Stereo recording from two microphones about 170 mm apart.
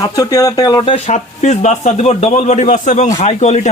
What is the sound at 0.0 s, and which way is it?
Speech, 20° left (ahead or behind).